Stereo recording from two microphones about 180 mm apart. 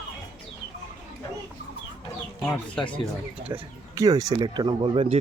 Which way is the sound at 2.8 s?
25° left (ahead or behind).